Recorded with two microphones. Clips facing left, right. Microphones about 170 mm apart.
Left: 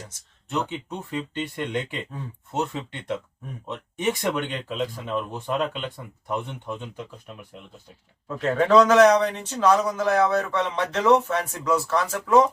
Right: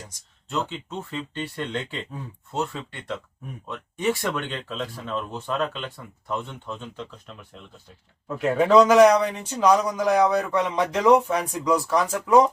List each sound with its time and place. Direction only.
0.5 s speech: 15° left (ahead or behind)
8.3 s speech: 10° right (ahead or behind)